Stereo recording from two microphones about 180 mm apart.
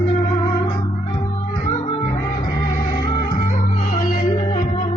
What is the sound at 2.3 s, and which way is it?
Music, 50° left (ahead or behind).